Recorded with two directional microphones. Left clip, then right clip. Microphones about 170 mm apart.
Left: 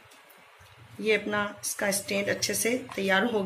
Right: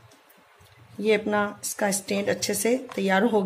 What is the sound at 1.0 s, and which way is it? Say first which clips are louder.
Speech: right 4 dB; 65° right (ahead or behind).